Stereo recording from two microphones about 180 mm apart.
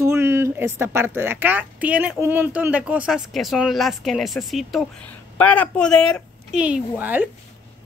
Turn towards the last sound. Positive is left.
turn(degrees=-10)  # may be behind; listen again after turning